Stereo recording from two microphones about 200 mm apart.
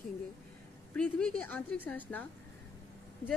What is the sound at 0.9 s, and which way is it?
A woman's voice, 5° left (ahead or behind).